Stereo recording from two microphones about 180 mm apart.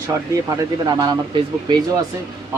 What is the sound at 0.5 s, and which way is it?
Speech, 20° right (ahead or behind).